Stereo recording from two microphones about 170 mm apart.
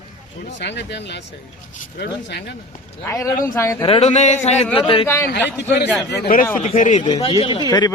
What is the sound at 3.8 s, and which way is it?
Speech, 35° left (ahead or behind).